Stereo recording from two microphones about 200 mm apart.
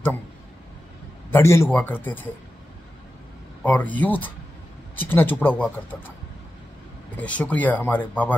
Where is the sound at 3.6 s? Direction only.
10° left (ahead or behind).